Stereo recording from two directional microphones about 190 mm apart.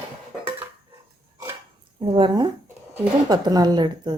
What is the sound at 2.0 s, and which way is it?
Speech, 25° right (ahead or behind).